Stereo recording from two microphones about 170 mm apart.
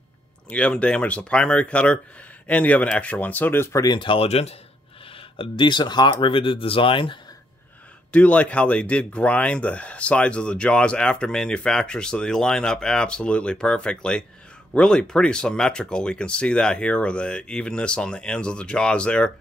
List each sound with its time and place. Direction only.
0.5 s speech: 5° left (ahead or behind); by 7.2 s 30° left (ahead or behind)
8.1 s speech: 5° left (ahead or behind)